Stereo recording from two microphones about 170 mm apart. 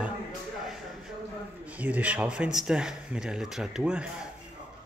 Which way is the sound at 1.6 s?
10° right (ahead or behind).